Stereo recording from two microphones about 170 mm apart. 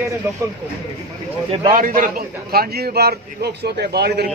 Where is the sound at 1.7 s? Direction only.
55° right (ahead or behind).